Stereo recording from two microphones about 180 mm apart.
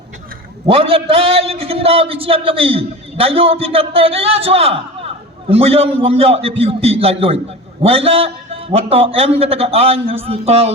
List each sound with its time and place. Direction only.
0.7 s a man's voice: 30° right (ahead or behind)